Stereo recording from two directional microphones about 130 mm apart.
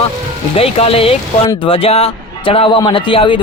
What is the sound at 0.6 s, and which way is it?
Speech, 50° left (ahead or behind).